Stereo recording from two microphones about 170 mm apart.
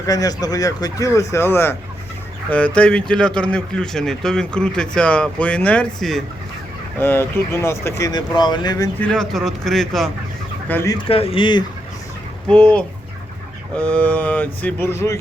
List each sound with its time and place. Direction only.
0.0 s a man's voice: 20° left (ahead or behind); by 6.2 s centre (ahead or behind)
7.0 s speech: 10° left (ahead or behind)
9.0 s speech: 5° left (ahead or behind)
10.7 s speech: 15° left (ahead or behind)
10.9 s speech: 35° left (ahead or behind)
12.5 s speech: 5° left (ahead or behind)